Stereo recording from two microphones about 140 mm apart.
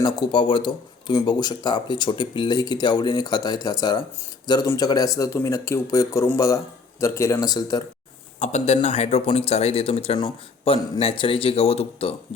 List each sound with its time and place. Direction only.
0.0 s speech: 35° left (ahead or behind)
8.4 s speech: 50° left (ahead or behind)